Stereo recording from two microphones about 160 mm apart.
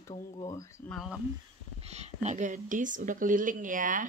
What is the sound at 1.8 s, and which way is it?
Speech, 45° right (ahead or behind).